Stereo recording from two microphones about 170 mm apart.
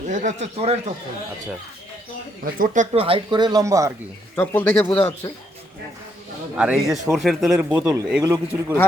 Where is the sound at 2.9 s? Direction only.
30° right (ahead or behind).